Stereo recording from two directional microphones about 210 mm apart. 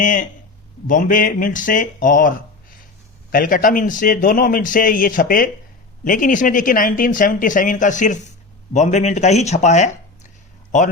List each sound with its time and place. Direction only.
0.0 s speech: 40° left (ahead or behind)
3.3 s speech: 40° left (ahead or behind)